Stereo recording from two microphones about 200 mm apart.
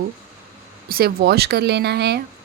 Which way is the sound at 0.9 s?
50° right (ahead or behind).